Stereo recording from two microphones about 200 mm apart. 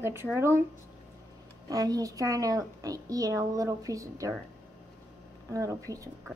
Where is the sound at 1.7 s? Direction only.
20° right (ahead or behind).